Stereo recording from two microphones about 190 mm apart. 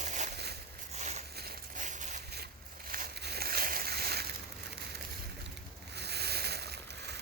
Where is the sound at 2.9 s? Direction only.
55° right (ahead or behind).